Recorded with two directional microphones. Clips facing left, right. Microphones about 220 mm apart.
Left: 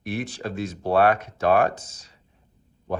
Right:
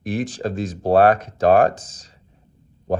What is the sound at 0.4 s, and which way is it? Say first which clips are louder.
Speech: right 5 dB; 40° right (ahead or behind).